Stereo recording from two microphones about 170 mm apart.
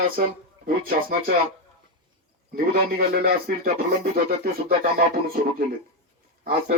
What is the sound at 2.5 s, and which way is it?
A man's voice, 60° right (ahead or behind).